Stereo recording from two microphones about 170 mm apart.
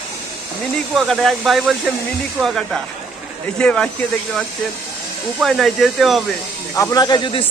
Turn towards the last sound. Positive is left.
turn(degrees=25)  # may be behind; listen again after turning